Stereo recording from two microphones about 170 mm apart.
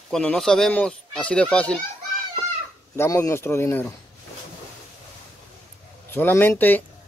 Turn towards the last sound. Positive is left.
turn(degrees=10)  # may be behind; listen again after turning